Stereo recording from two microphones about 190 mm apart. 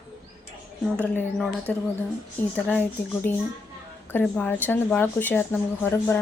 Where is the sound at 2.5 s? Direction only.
10° left (ahead or behind).